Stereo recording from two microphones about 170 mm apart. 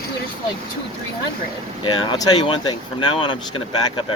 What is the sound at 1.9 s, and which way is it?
Speech, 25° left (ahead or behind).